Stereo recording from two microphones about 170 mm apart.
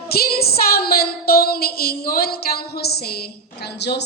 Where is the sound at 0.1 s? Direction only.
65° left (ahead or behind).